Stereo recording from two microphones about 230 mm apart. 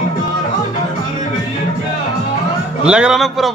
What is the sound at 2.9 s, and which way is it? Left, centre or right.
Speech, centre.